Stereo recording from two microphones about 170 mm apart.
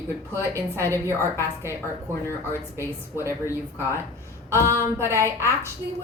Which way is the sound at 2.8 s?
15° right (ahead or behind).